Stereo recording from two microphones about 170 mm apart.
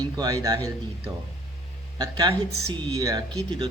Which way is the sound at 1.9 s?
25° right (ahead or behind).